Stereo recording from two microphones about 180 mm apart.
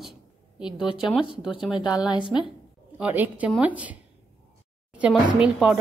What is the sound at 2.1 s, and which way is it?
Speech, 25° left (ahead or behind).